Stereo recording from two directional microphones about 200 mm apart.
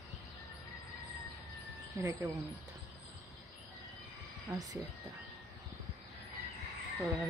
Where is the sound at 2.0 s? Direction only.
15° right (ahead or behind).